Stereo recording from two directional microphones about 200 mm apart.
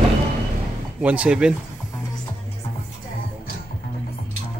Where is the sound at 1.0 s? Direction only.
5° right (ahead or behind).